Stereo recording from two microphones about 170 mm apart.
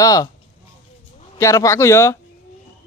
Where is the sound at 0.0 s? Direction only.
20° left (ahead or behind).